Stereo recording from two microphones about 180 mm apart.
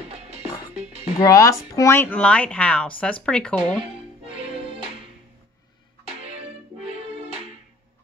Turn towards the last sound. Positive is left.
turn(degrees=-35)  # may be behind; listen again after turning